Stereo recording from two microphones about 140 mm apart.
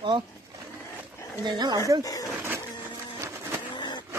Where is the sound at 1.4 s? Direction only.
30° right (ahead or behind).